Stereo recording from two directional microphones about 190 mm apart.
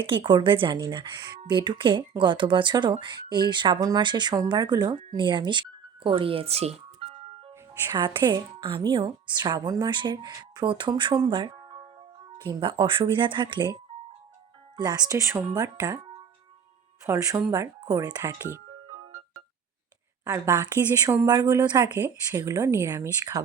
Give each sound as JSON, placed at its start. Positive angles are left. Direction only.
{"t": 0.0, "sound": "speech", "side_deg": -25}
{"t": 7.7, "sound": "a woman's voice", "side_deg": -20}
{"t": 14.8, "sound": "a woman's voice", "side_deg": -20}
{"t": 17.1, "sound": "speech", "side_deg": -15}
{"t": 20.2, "sound": "a woman's voice", "side_deg": -15}